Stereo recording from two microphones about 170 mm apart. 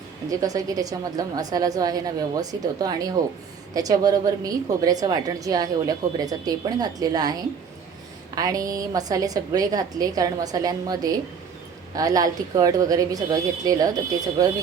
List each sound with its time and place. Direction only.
0.3 s a woman's voice: 20° right (ahead or behind)